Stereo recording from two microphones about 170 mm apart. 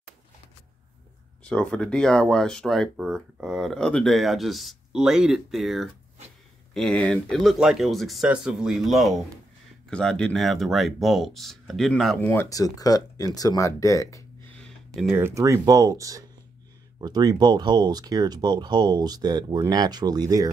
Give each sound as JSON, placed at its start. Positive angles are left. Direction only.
{"t": 1.4, "sound": "speech", "side_deg": 5}
{"t": 12.3, "sound": "speech", "side_deg": 15}
{"t": 15.1, "sound": "speech", "side_deg": -15}